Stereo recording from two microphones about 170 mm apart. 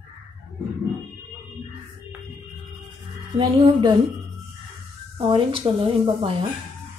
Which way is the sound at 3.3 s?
30° right (ahead or behind).